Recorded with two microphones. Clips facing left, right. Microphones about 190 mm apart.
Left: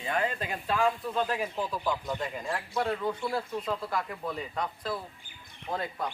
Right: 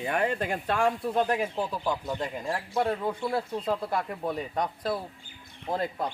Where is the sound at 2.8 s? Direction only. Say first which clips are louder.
Right 2 dB; 20° right (ahead or behind).